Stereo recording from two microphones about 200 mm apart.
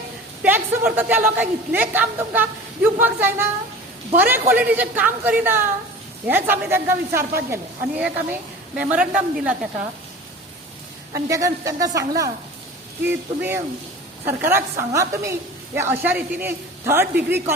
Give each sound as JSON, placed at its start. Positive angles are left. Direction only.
{"t": 0.4, "sound": "a woman's voice", "side_deg": -10}
{"t": 11.3, "sound": "a woman's voice", "side_deg": -15}